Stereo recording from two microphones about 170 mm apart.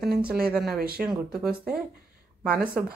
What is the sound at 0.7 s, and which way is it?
Speech, 60° right (ahead or behind).